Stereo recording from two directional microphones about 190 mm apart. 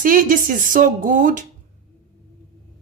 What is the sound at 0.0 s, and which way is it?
Speech, 45° right (ahead or behind).